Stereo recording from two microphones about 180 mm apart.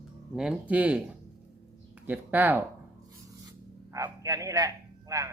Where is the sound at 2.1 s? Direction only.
10° right (ahead or behind).